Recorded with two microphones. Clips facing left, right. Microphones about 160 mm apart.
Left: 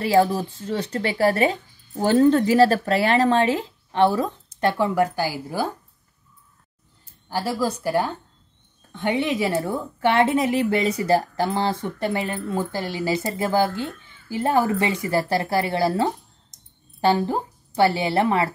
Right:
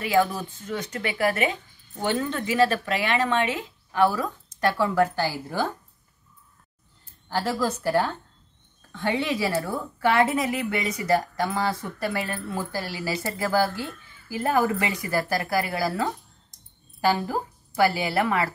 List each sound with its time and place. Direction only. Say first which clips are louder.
0.0 s speech: left 4 dB; 35° left (ahead or behind); by 5.7 s 10° left (ahead or behind)
7.2 s speech: left 1 dB; 10° left (ahead or behind); by 18.5 s 25° left (ahead or behind)